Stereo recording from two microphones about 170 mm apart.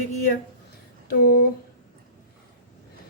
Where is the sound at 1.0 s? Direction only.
60° left (ahead or behind).